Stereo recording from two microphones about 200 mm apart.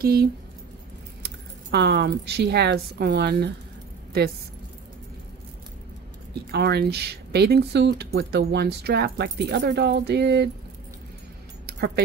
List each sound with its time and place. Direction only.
0.0 s speech: 50° right (ahead or behind)
6.5 s speech: 55° right (ahead or behind)
11.6 s keys jangling: 50° right (ahead or behind)